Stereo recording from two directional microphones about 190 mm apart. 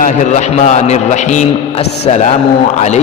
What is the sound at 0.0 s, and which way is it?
A man's voice, 40° left (ahead or behind).